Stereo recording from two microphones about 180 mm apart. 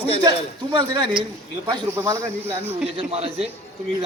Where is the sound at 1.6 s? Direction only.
15° right (ahead or behind).